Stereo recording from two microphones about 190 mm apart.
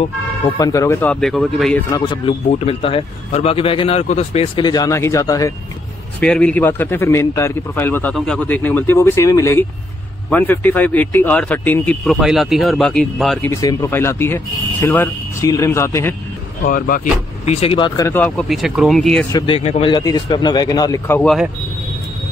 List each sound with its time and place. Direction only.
0.6 s a man's voice: 20° left (ahead or behind); by 1.8 s centre (ahead or behind)
1.9 s speech: 25° left (ahead or behind)
6.1 s a man's voice: 5° left (ahead or behind)
13.5 s a man's voice: 15° left (ahead or behind)
16.6 s speech: 50° left (ahead or behind); by 18.3 s 15° left (ahead or behind)
18.5 s speech: centre (ahead or behind)
19.3 s speech: 25° left (ahead or behind)
21.2 s speech: centre (ahead or behind)